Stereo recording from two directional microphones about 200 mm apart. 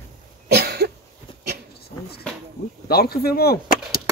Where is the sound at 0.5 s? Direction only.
55° right (ahead or behind).